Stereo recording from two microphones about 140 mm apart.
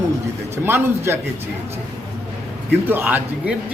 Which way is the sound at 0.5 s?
15° right (ahead or behind).